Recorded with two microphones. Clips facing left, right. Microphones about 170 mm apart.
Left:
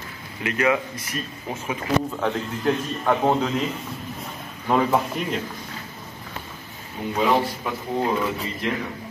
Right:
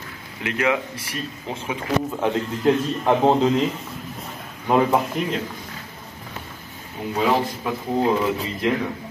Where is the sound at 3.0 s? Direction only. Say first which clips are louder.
Right 3 dB; 20° right (ahead or behind).